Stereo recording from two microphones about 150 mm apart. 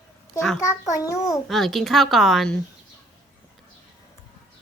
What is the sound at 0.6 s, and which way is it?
Speech, 20° left (ahead or behind).